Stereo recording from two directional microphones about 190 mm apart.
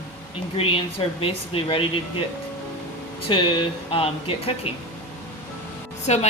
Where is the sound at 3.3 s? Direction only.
30° left (ahead or behind).